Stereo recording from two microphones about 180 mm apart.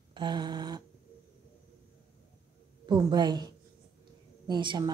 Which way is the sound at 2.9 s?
25° right (ahead or behind).